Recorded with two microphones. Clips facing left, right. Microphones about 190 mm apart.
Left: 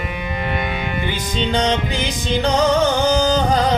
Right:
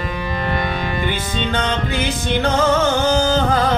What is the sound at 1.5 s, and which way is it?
Music, 15° left (ahead or behind).